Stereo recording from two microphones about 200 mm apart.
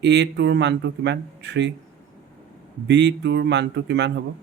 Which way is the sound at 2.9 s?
60° right (ahead or behind).